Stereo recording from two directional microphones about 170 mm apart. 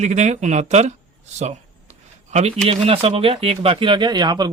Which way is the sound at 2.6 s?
35° right (ahead or behind).